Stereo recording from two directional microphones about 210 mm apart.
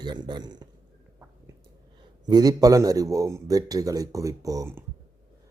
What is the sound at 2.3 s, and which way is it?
A man's voice, 20° right (ahead or behind).